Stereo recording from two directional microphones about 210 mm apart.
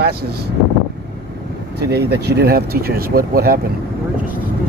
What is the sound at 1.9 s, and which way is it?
Speech, 50° right (ahead or behind).